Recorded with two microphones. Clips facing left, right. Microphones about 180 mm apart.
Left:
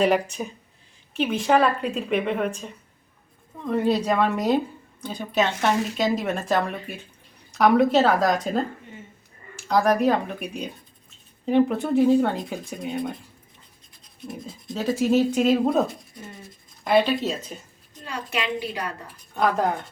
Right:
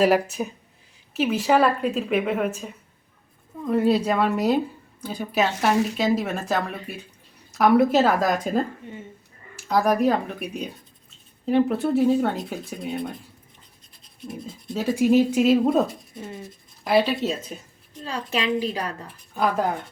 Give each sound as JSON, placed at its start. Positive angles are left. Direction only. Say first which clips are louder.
{"t": 0.0, "sound": "speech", "louder": "right 2 dB", "side_deg": -5}
{"t": 9.6, "sound": "speech", "louder": "even", "side_deg": -5}
{"t": 14.7, "sound": "speech", "louder": "right 2 dB", "side_deg": -10}
{"t": 16.8, "sound": "speech", "louder": "even", "side_deg": -5}
{"t": 18.0, "sound": "a child's voice", "louder": "right 2 dB", "side_deg": -35}
{"t": 19.3, "sound": "speech", "louder": "left 1 dB", "side_deg": -5}